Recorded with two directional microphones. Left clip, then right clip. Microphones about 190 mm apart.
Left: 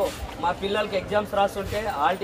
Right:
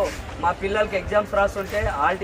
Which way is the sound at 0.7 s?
5° right (ahead or behind).